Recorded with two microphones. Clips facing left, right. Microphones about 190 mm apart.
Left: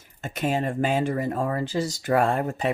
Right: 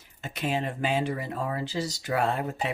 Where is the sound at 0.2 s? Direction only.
45° left (ahead or behind).